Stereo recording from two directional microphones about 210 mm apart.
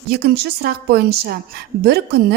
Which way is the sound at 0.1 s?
50° right (ahead or behind).